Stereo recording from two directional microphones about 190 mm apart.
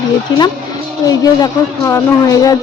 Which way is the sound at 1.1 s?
20° left (ahead or behind).